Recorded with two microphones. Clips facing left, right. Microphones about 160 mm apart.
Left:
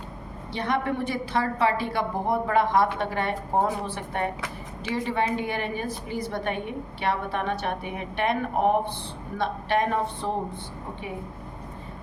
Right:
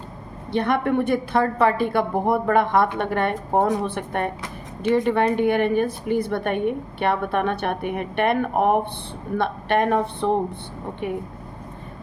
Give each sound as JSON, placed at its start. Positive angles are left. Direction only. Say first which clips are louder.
{"t": 0.5, "sound": "a woman's voice", "louder": "right 6 dB", "side_deg": -55}